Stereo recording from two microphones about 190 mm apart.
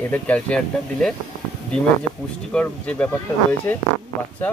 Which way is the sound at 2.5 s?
5° left (ahead or behind).